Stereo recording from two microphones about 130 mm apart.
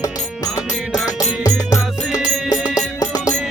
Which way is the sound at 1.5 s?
25° left (ahead or behind).